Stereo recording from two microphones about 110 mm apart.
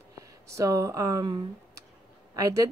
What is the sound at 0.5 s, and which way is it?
Speech, 30° right (ahead or behind).